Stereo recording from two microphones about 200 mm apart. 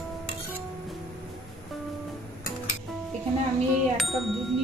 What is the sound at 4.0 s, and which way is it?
Music, centre (ahead or behind).